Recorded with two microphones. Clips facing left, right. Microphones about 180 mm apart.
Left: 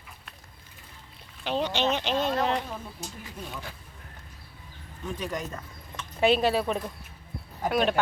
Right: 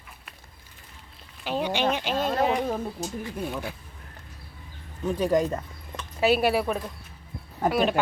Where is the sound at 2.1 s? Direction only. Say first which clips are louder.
Right 2 dB; 50° right (ahead or behind).